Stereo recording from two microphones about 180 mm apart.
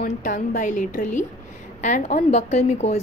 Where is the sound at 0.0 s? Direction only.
45° left (ahead or behind).